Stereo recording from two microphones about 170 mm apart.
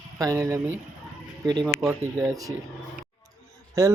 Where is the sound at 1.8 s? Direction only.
20° right (ahead or behind).